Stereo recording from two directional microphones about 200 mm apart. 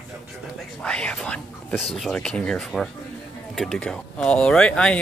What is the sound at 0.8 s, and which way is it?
Speech, 5° left (ahead or behind).